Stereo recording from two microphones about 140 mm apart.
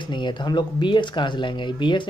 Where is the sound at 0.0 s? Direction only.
35° left (ahead or behind).